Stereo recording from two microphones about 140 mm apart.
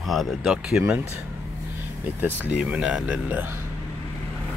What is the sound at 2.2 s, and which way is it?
Speech, 10° right (ahead or behind).